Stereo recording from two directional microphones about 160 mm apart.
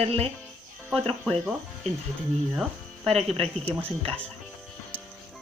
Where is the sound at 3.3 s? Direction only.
40° right (ahead or behind).